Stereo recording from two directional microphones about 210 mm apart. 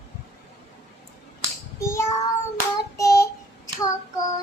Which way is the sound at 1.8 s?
15° left (ahead or behind).